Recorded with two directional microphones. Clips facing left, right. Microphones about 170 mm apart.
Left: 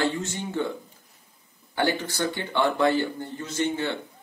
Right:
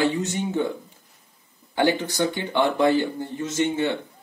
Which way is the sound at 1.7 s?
20° right (ahead or behind).